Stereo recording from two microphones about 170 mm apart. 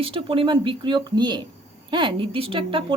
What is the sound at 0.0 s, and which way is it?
A woman's voice, 30° right (ahead or behind).